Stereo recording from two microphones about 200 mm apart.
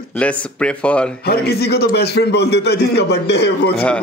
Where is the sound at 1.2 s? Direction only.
50° left (ahead or behind).